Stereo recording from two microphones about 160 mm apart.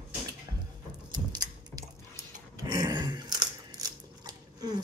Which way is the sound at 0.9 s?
25° right (ahead or behind).